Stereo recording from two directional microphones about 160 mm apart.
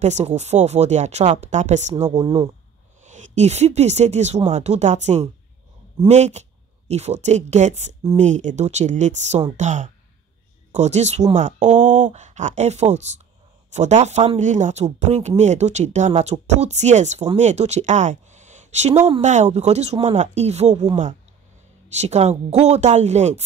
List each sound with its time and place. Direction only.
0.0 s speech: 45° right (ahead or behind)
2.0 s speech: 25° right (ahead or behind)
3.0 s speech: 50° right (ahead or behind)